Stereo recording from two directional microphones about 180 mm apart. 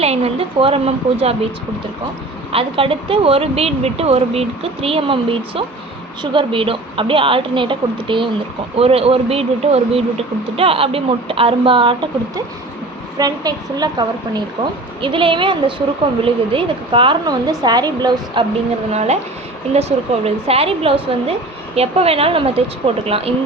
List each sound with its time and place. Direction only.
0.0 s speech: 35° right (ahead or behind)
2.5 s a woman's voice: 30° right (ahead or behind)
13.1 s a woman's voice: 20° right (ahead or behind)
18.9 s speech: 35° right (ahead or behind)